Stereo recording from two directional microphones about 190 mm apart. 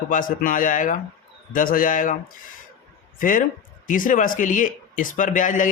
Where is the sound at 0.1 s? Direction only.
45° left (ahead or behind).